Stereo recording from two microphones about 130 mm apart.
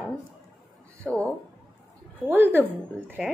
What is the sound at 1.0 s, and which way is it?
Speech, 10° left (ahead or behind).